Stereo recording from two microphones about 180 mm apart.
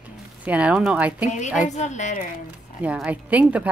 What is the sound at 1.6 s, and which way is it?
Speech, 40° left (ahead or behind).